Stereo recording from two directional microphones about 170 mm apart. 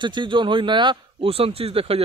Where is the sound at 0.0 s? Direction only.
30° right (ahead or behind).